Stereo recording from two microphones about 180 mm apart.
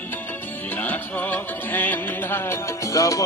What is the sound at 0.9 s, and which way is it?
Music, 10° left (ahead or behind).